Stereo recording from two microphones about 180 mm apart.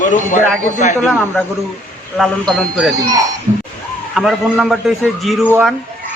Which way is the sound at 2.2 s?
Centre (ahead or behind).